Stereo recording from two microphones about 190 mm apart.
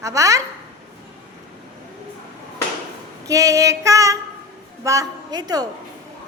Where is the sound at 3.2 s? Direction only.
15° right (ahead or behind).